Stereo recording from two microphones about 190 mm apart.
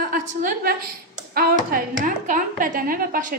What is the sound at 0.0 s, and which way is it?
A woman's voice, 50° right (ahead or behind).